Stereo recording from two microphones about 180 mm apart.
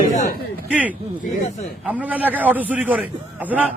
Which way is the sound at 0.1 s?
45° left (ahead or behind).